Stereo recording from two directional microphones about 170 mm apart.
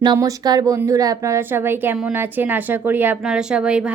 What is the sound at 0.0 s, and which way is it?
Speech, 20° right (ahead or behind).